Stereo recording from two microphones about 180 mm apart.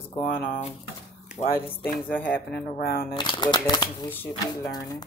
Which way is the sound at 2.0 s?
10° left (ahead or behind).